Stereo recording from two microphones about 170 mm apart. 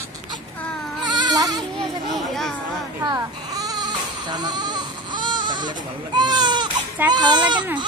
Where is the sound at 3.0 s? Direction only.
20° right (ahead or behind).